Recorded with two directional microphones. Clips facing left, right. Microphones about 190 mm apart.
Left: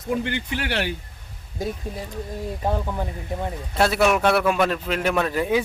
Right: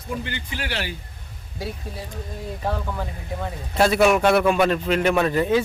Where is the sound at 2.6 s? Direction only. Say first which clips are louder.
Left 2 dB; 20° left (ahead or behind).